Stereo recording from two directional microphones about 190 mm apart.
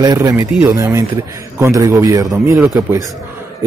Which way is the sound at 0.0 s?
20° right (ahead or behind).